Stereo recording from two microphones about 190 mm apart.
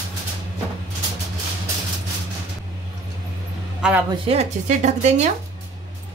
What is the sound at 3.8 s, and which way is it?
Speech, 5° right (ahead or behind).